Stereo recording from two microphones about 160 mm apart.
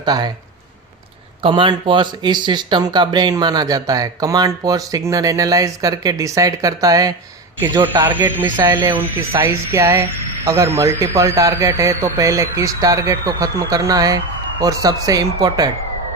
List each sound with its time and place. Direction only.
0.0 s speech: 25° right (ahead or behind)
1.4 s speech: 30° right (ahead or behind)
8.0 s speech: 10° right (ahead or behind)